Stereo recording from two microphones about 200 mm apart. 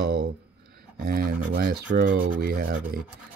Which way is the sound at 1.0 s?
50° right (ahead or behind).